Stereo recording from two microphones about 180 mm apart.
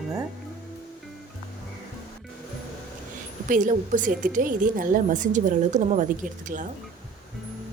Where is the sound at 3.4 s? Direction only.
45° right (ahead or behind).